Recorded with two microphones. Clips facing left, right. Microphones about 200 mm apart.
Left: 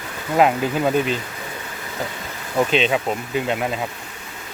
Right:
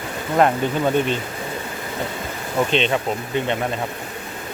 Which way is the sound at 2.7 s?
5° left (ahead or behind).